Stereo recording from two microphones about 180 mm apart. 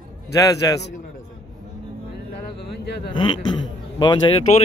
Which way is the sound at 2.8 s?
70° left (ahead or behind).